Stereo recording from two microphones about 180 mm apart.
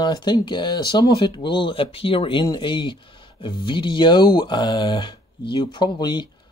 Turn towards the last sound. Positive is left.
turn(degrees=25)  # may be behind; listen again after turning